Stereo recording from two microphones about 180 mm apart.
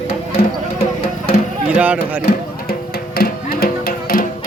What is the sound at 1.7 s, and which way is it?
Speech, 10° right (ahead or behind).